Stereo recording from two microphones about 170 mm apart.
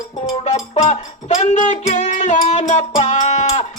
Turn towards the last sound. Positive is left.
turn(degrees=40)  # may be behind; listen again after turning